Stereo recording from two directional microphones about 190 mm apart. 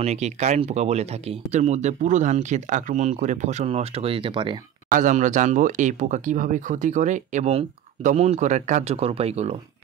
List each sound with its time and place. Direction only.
0.0 s speech: 35° right (ahead or behind)
4.9 s speech: 40° right (ahead or behind)